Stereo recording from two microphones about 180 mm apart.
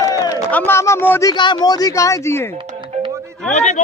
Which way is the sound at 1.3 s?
25° left (ahead or behind).